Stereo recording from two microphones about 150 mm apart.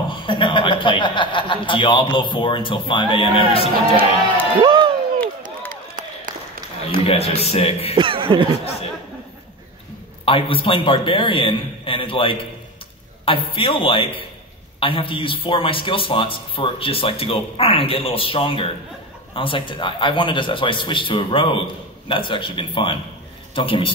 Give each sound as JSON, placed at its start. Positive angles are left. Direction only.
{"t": 0.1, "sound": "speech", "side_deg": 35}
{"t": 4.6, "sound": "a sound", "side_deg": -30}
{"t": 5.7, "sound": "a sound", "side_deg": -65}
{"t": 7.1, "sound": "a man's voice", "side_deg": 45}
{"t": 7.9, "sound": "chuckle", "side_deg": -35}
{"t": 10.2, "sound": "speech", "side_deg": 35}